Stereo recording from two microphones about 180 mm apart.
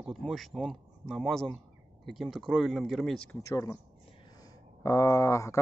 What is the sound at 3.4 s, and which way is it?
Speech, 15° left (ahead or behind).